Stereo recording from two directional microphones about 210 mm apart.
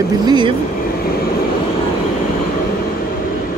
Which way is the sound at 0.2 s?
20° right (ahead or behind).